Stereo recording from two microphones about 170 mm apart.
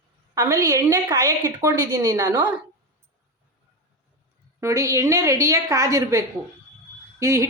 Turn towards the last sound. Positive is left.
turn(degrees=-20)  # may be behind; listen again after turning